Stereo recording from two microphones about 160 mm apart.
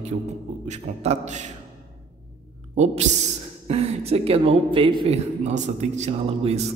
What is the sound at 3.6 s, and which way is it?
A man's voice, 40° right (ahead or behind).